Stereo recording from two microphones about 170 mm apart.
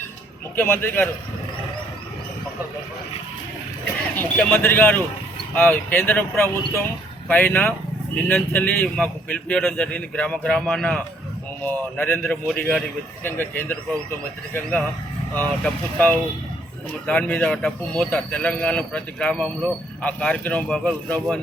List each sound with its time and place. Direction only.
0.5 s speech: 10° left (ahead or behind)
4.2 s speech: 10° left (ahead or behind)